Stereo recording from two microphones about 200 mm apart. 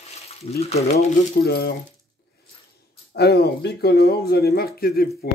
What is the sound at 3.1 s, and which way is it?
Speech, 50° left (ahead or behind).